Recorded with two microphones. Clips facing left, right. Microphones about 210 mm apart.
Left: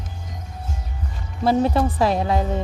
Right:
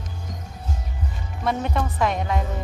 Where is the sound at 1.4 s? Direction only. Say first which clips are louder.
Left 7 dB; 35° left (ahead or behind).